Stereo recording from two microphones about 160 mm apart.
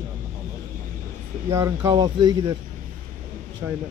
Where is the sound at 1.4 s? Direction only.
20° right (ahead or behind).